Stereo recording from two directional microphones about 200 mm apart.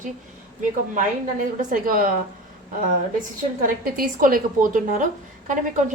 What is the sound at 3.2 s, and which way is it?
A woman's voice, 45° right (ahead or behind).